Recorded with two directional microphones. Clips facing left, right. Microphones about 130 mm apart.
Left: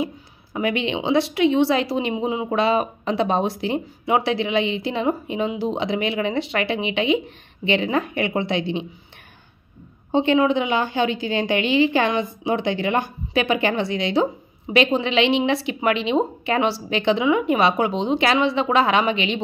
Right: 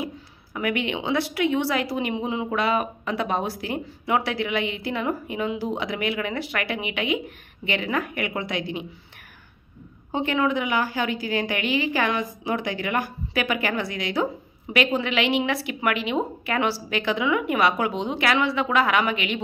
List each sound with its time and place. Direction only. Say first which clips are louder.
0.0 s a woman's voice: left 5 dB; 25° left (ahead or behind)
10.1 s a woman's voice: left 6 dB; 25° left (ahead or behind)